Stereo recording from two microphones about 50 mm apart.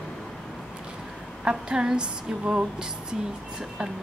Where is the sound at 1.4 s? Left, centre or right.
Right.